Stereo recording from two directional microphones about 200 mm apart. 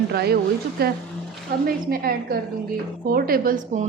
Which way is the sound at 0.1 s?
50° right (ahead or behind).